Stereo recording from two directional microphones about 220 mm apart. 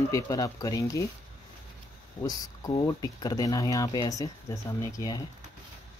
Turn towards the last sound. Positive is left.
turn(degrees=15)  # may be behind; listen again after turning